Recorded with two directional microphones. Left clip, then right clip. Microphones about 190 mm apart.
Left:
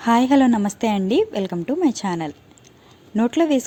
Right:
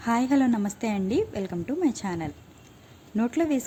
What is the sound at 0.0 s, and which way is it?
A woman's voice, 25° left (ahead or behind).